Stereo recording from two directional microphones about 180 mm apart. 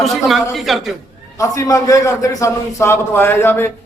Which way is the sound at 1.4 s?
20° left (ahead or behind).